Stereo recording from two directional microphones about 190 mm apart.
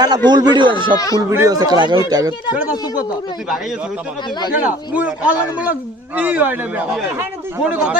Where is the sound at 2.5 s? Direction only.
10° right (ahead or behind).